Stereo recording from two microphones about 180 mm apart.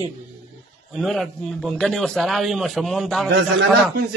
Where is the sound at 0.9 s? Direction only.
Centre (ahead or behind).